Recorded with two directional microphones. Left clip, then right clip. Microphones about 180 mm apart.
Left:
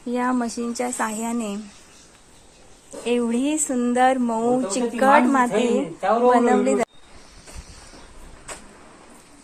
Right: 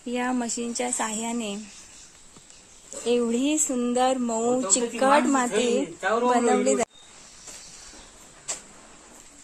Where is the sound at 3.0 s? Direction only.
35° right (ahead or behind).